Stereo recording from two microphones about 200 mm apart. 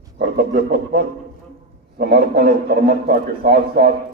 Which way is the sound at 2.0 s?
50° right (ahead or behind).